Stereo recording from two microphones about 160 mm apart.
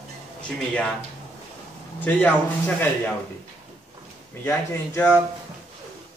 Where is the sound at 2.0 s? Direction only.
10° left (ahead or behind).